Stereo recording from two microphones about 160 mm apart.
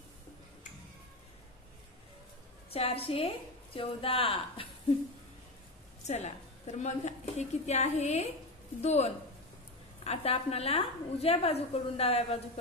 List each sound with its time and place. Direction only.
2.7 s a woman's voice: 35° left (ahead or behind)
6.0 s a woman's voice: 45° left (ahead or behind)